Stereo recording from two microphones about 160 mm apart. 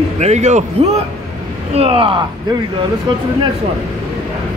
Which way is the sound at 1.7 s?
35° right (ahead or behind).